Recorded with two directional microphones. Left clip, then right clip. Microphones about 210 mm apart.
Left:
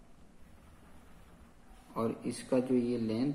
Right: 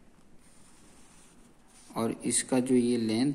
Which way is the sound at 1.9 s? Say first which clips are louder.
Right 4 dB; 50° right (ahead or behind).